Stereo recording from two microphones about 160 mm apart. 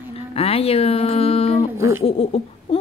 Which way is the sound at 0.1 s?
40° left (ahead or behind).